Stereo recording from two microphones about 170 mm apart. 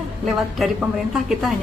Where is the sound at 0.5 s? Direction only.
Centre (ahead or behind).